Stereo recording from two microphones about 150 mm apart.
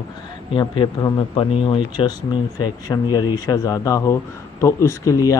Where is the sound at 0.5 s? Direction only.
30° left (ahead or behind).